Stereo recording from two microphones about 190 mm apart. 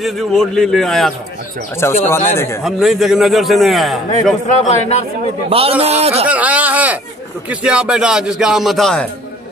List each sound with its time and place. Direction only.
0.0 s a man's voice: centre (ahead or behind)
2.0 s speech: 15° left (ahead or behind)
2.6 s a man's voice: centre (ahead or behind)
4.6 s a man's voice: 35° left (ahead or behind)
5.5 s a man's voice: 30° right (ahead or behind)
6.2 s a man's voice: 5° right (ahead or behind)